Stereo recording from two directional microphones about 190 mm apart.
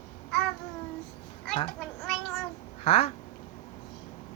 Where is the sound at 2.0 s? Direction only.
Centre (ahead or behind).